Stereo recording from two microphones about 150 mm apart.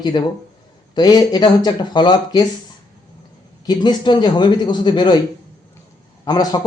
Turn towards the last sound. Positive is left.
turn(degrees=25)  # may be behind; listen again after turning